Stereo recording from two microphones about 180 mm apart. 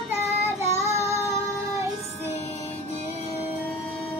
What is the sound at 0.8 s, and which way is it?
Child singing, 15° right (ahead or behind).